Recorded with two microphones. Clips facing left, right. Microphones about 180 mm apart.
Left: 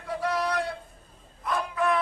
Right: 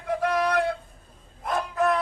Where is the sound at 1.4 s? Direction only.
45° right (ahead or behind).